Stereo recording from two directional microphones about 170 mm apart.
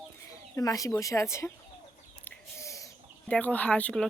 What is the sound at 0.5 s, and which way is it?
Speech, 20° left (ahead or behind).